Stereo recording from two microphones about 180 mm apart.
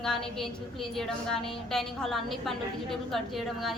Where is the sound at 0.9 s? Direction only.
Centre (ahead or behind).